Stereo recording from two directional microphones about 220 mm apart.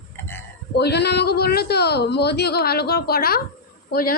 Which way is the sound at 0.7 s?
50° left (ahead or behind).